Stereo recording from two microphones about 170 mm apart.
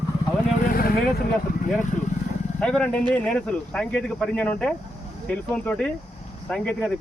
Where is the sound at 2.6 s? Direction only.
5° left (ahead or behind).